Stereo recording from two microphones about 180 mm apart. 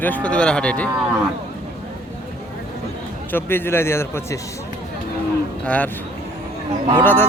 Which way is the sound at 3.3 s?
10° left (ahead or behind).